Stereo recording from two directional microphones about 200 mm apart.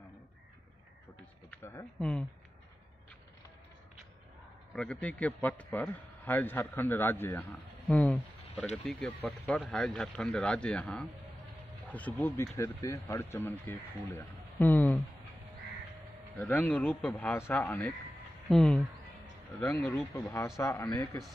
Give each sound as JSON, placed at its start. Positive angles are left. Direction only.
{"t": 1.5, "sound": "speech", "side_deg": 15}
{"t": 4.7, "sound": "speech", "side_deg": 5}
{"t": 16.3, "sound": "speech", "side_deg": 10}
{"t": 21.0, "sound": "speech", "side_deg": 5}